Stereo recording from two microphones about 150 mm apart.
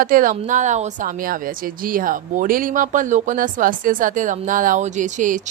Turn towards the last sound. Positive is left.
turn(degrees=-55)  # may be behind; listen again after turning